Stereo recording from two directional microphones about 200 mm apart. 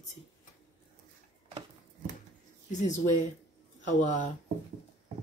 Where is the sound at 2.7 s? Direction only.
35° left (ahead or behind).